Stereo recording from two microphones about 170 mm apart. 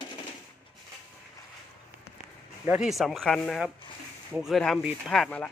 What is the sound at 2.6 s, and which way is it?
Speech, 5° right (ahead or behind).